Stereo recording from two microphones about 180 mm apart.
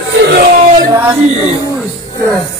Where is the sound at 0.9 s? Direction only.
10° right (ahead or behind).